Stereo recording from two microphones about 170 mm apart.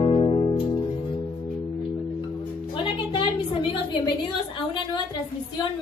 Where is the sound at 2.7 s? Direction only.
30° left (ahead or behind).